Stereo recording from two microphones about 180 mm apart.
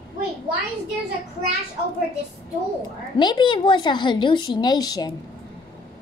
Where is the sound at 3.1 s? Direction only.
25° left (ahead or behind).